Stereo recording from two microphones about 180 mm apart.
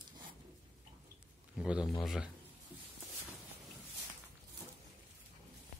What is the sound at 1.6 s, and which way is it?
Speech, 5° right (ahead or behind).